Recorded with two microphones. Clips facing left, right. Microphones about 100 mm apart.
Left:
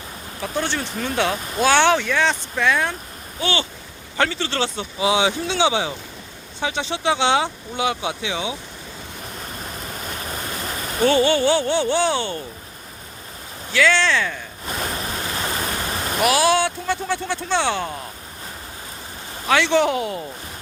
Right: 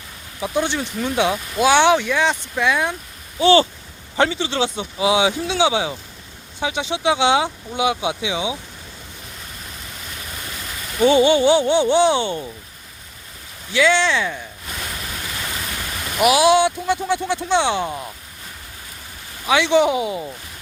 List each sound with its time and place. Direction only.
0.4 s speech: 15° right (ahead or behind)
3.4 s speech: 35° right (ahead or behind)
4.2 s speech: 15° right (ahead or behind)
9.6 s vehicle: 45° left (ahead or behind)
11.0 s speech: 15° right (ahead or behind)
13.7 s speech: 15° right (ahead or behind)
14.7 s waves: 40° left (ahead or behind)
16.2 s speech: 15° right (ahead or behind)
19.5 s speech: 10° right (ahead or behind)